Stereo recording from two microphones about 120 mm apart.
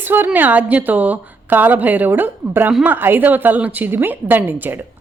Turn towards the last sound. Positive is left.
turn(degrees=-15)  # may be behind; listen again after turning